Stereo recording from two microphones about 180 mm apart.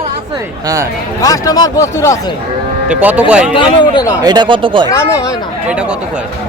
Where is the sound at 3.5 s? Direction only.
25° left (ahead or behind).